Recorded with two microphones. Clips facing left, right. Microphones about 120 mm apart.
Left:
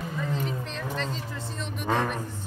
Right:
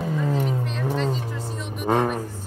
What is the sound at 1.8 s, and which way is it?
Music, 45° right (ahead or behind).